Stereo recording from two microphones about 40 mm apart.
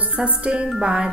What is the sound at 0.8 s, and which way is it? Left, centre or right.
Speech, right.